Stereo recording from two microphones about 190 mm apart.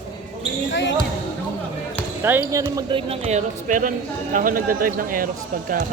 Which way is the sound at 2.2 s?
10° right (ahead or behind).